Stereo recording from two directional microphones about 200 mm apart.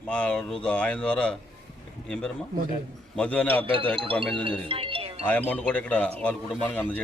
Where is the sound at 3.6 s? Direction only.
25° right (ahead or behind).